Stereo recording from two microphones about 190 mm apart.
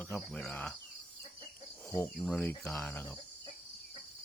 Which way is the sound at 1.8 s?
15° left (ahead or behind).